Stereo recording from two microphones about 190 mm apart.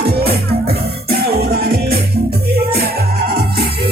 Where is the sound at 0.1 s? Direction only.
55° right (ahead or behind).